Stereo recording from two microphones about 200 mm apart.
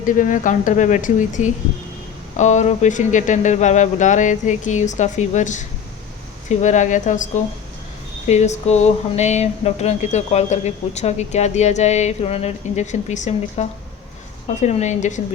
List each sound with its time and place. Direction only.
0.2 s speech: 40° left (ahead or behind)